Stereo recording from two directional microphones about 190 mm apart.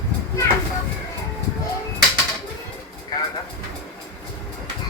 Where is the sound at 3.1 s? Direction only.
20° left (ahead or behind).